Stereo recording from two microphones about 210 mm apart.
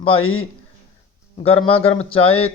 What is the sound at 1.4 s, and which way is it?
A man's voice, 25° left (ahead or behind).